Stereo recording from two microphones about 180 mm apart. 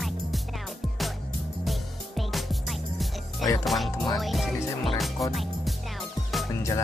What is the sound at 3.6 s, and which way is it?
Speech, centre (ahead or behind).